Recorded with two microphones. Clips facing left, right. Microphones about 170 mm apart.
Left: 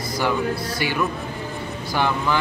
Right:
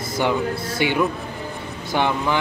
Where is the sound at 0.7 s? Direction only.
20° right (ahead or behind).